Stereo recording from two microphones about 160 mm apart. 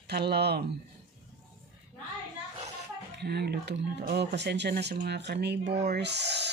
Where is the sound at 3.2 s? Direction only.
90° right.